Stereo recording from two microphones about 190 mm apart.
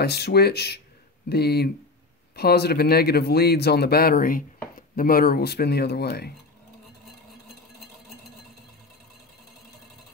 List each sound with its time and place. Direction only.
0.0 s speech: 60° left (ahead or behind)